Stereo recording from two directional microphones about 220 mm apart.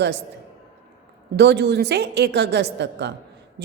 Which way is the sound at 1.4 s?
50° right (ahead or behind).